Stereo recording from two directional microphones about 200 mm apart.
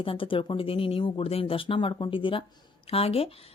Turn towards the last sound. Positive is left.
turn(degrees=30)  # may be behind; listen again after turning